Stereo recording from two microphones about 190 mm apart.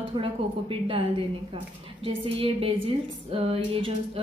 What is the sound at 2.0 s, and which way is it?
A woman's voice, 30° right (ahead or behind).